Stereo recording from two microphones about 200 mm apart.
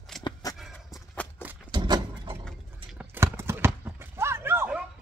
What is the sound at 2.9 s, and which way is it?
Horse, 10° right (ahead or behind).